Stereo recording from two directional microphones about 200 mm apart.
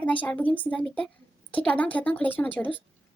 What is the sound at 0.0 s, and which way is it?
A woman's voice, 5° left (ahead or behind).